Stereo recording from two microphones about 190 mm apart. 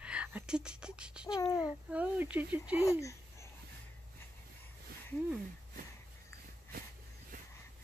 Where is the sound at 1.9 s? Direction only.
5° right (ahead or behind).